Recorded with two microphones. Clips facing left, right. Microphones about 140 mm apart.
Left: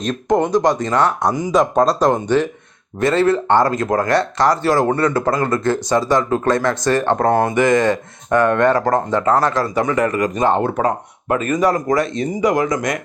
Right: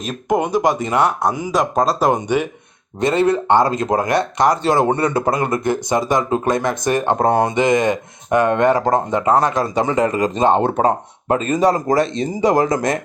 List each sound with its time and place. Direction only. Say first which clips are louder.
0.0 s speech: left 2 dB; 5° right (ahead or behind); by 13.0 s 30° right (ahead or behind)